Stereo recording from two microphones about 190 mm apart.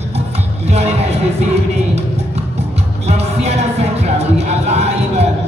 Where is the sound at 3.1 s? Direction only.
35° right (ahead or behind).